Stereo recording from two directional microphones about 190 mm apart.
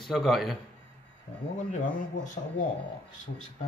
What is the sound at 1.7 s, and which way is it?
Speech, 40° left (ahead or behind).